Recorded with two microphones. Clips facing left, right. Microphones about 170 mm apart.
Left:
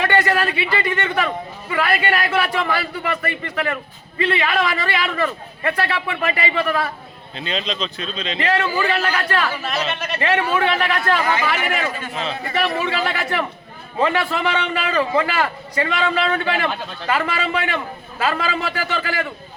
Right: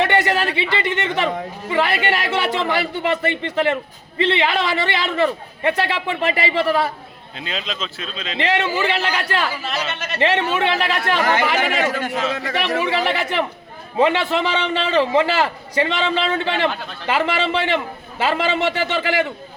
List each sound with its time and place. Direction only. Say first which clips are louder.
0.0 s a man's voice: even; 20° right (ahead or behind)
7.3 s speech: left 3 dB; 5° right (ahead or behind)
8.4 s a man's voice: right 1 dB; 25° right (ahead or behind)
9.6 s speech: left 2 dB; centre (ahead or behind)
10.2 s a man's voice: right 1 dB; 25° right (ahead or behind)
11.2 s a man's voice: right 2 dB; 75° right (ahead or behind)
13.1 s a man's voice: right 2 dB; 20° right (ahead or behind)